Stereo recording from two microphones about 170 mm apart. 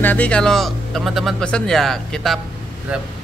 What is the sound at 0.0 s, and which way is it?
Speech, 10° left (ahead or behind).